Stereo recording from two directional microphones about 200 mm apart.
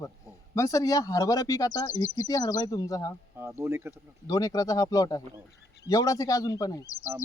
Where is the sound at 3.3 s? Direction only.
15° right (ahead or behind).